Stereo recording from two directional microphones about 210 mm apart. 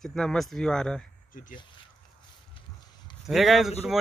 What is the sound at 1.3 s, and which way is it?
Speech, 40° left (ahead or behind).